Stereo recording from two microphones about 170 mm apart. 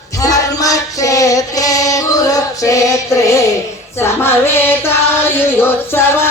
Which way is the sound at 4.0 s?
15° left (ahead or behind).